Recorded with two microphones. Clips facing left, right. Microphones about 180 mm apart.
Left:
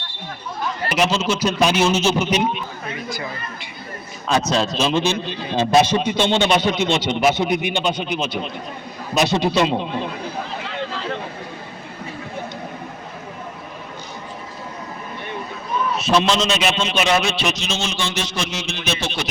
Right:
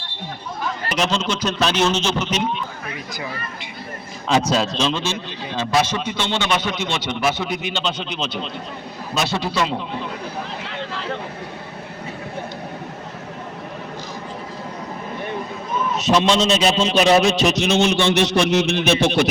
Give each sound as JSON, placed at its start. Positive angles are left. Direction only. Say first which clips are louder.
{"t": 0.9, "sound": "a man's voice", "louder": "left 3 dB", "side_deg": 5}
{"t": 4.3, "sound": "speech", "louder": "right 1 dB", "side_deg": -15}
{"t": 4.6, "sound": "a man's voice", "louder": "left 3 dB", "side_deg": 5}
{"t": 16.0, "sound": "a man's voice", "louder": "right 1 dB", "side_deg": -20}
{"t": 16.4, "sound": "speech", "louder": "right 3 dB", "side_deg": -35}
{"t": 17.5, "sound": "a man's voice", "louder": "right 8 dB", "side_deg": -60}